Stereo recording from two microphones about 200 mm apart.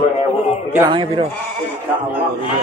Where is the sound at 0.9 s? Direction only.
25° right (ahead or behind).